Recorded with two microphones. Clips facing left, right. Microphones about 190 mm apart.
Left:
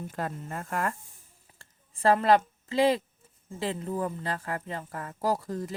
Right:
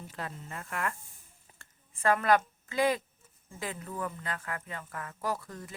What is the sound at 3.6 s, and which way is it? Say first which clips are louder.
A woman's voice: left 6 dB; 30° left (ahead or behind).